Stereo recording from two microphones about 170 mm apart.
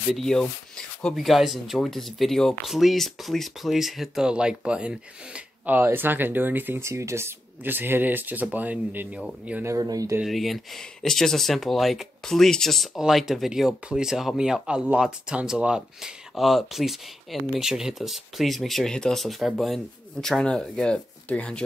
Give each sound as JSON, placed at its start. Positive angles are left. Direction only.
{"t": 0.1, "sound": "speech", "side_deg": 5}
{"t": 10.2, "sound": "speech", "side_deg": 0}